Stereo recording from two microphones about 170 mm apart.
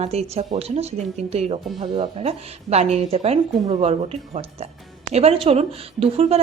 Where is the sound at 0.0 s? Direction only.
40° right (ahead or behind).